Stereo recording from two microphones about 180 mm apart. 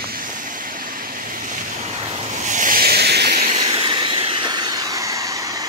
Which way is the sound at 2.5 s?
45° right (ahead or behind).